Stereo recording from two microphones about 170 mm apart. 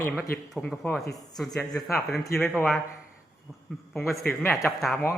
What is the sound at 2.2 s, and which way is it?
Speech, 15° left (ahead or behind).